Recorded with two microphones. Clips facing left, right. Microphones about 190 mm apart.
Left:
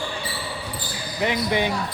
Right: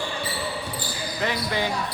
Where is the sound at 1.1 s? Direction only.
20° left (ahead or behind).